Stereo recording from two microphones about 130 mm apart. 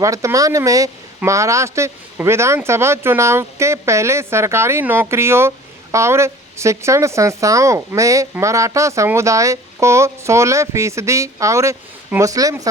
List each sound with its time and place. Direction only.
0.0 s speech: 25° right (ahead or behind)